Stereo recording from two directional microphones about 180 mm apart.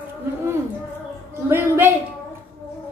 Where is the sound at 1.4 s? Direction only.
15° right (ahead or behind).